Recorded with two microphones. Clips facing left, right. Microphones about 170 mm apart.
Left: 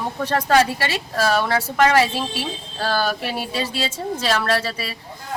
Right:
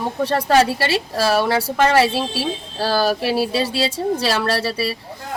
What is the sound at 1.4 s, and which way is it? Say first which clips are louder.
Speech: right 1 dB; 30° right (ahead or behind).